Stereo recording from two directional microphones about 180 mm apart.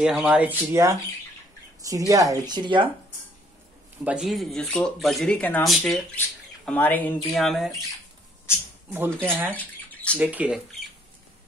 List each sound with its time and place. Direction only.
0.0 s speech: 5° right (ahead or behind); by 2.9 s 25° right (ahead or behind)
4.0 s speech: 5° right (ahead or behind)
8.9 s speech: 10° right (ahead or behind)
9.6 s bathtub: 10° left (ahead or behind)
10.1 s speech: 10° right (ahead or behind)